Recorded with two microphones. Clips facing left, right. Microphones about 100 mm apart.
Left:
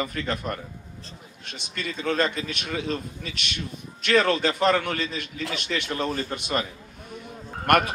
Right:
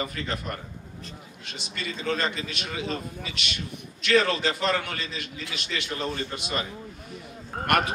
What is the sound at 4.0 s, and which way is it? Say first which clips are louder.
A man's voice: left 2 dB; 50° left (ahead or behind).